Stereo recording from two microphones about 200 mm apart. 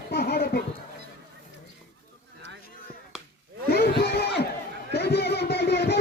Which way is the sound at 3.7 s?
55° left (ahead or behind).